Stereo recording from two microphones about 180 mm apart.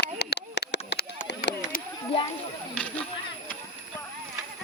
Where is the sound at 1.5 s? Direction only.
70° left (ahead or behind).